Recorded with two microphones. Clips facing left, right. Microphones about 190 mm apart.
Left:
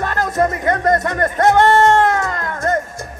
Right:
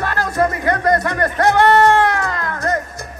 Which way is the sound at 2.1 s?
25° left (ahead or behind).